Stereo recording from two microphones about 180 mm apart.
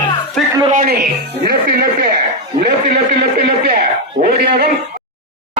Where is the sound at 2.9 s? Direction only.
65° right (ahead or behind).